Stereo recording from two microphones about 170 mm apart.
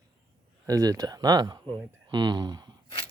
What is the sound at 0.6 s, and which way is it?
Speech, 20° right (ahead or behind).